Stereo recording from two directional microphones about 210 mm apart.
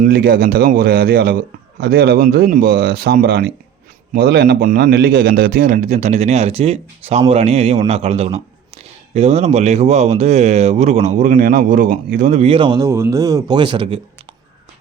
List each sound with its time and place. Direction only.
0.0 s speech: 45° right (ahead or behind); by 14.0 s 25° right (ahead or behind)